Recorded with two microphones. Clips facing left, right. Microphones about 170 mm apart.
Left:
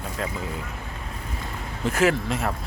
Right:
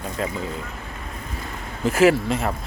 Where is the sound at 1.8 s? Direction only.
10° right (ahead or behind).